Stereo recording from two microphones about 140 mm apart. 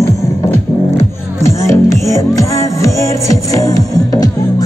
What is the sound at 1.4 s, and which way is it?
Music, 20° left (ahead or behind).